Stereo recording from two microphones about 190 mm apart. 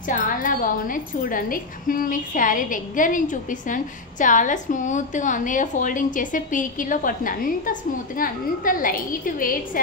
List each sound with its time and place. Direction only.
0.1 s a woman's voice: 45° left (ahead or behind)